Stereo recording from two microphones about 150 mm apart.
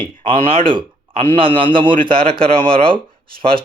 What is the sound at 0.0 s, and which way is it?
A man's voice, 35° right (ahead or behind).